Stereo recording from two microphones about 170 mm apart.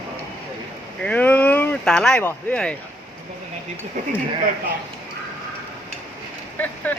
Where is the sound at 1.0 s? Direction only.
10° left (ahead or behind).